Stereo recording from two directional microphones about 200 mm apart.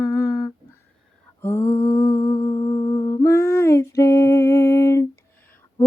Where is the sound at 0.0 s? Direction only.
15° left (ahead or behind).